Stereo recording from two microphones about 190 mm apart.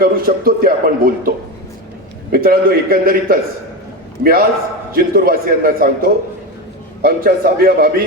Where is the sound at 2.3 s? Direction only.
50° right (ahead or behind).